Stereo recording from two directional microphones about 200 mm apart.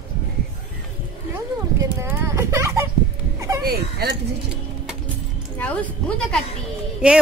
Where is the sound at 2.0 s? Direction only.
15° right (ahead or behind).